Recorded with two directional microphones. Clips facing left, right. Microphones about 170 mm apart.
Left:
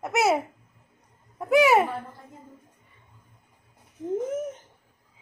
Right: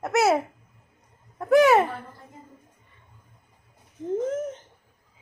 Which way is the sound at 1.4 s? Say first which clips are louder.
Right 2 dB; 5° left (ahead or behind).